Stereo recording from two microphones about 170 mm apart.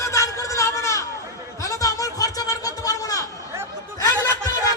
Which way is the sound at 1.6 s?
20° left (ahead or behind).